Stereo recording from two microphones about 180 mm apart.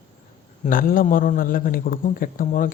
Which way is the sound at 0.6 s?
50° left (ahead or behind).